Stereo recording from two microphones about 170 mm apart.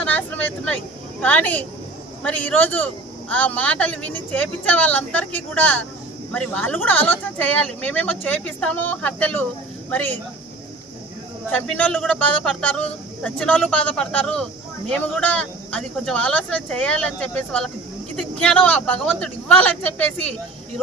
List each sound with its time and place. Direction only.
0.0 s a man's voice: 10° left (ahead or behind)
11.8 s a man's voice: 5° left (ahead or behind)